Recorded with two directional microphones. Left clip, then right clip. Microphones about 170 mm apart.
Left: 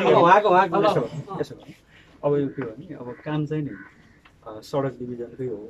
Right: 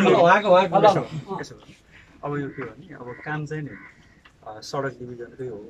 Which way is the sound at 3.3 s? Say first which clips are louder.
Left 3 dB; 20° left (ahead or behind).